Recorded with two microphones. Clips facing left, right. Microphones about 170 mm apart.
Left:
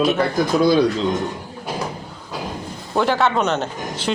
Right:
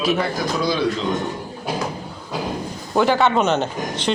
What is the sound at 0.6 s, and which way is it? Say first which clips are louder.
Speech: left 7 dB; 50° left (ahead or behind).